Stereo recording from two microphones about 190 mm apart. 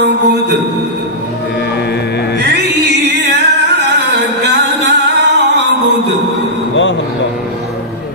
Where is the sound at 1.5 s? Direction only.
60° left (ahead or behind).